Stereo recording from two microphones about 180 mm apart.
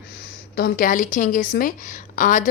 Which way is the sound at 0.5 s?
55° left (ahead or behind).